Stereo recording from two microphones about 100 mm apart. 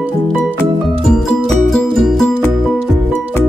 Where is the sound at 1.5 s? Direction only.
5° left (ahead or behind).